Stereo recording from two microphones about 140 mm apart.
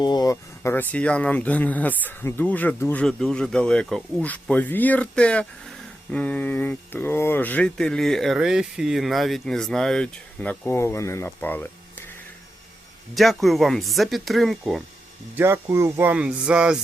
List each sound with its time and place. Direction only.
0.0 s speech: 30° left (ahead or behind); by 10.8 s 10° left (ahead or behind)
10.8 s speech: 20° left (ahead or behind)
13.1 s speech: centre (ahead or behind)
15.4 s speech: 15° right (ahead or behind)